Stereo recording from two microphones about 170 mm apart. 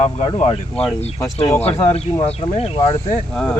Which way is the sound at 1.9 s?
35° left (ahead or behind).